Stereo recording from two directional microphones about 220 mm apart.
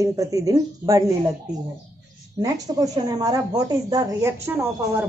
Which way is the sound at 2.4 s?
15° right (ahead or behind).